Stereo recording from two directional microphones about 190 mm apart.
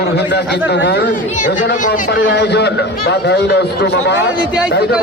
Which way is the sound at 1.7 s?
50° left (ahead or behind).